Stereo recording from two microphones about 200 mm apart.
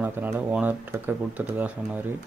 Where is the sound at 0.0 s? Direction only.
10° right (ahead or behind).